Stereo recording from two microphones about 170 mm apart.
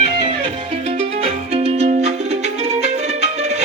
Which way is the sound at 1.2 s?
35° right (ahead or behind).